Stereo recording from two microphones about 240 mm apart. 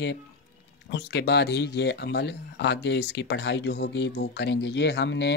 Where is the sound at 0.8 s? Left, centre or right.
Left.